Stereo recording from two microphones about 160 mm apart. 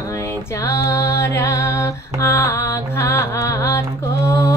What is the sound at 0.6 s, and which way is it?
Music, 20° left (ahead or behind).